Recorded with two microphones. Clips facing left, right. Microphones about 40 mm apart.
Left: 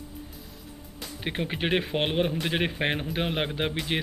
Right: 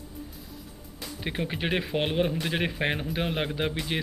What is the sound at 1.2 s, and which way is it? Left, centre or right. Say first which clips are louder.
Speech: left 1 dB; centre.